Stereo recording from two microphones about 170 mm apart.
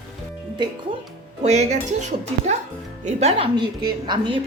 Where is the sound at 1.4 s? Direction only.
40° right (ahead or behind).